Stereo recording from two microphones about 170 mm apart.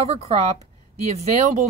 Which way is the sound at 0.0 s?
40° right (ahead or behind).